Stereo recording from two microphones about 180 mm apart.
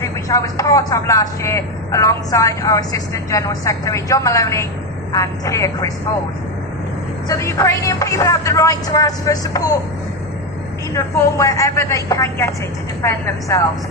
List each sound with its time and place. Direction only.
0.0 s speech: 20° left (ahead or behind)
7.3 s a woman's voice: 15° left (ahead or behind)
10.9 s speech: 15° left (ahead or behind)